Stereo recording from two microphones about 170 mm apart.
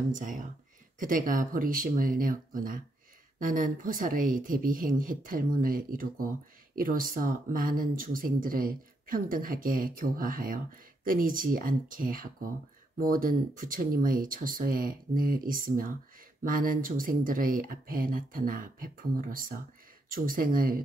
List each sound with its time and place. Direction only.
0.1 s a woman's voice: 50° right (ahead or behind)